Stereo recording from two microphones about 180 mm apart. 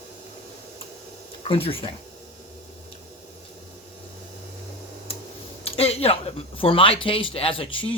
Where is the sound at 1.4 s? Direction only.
30° left (ahead or behind).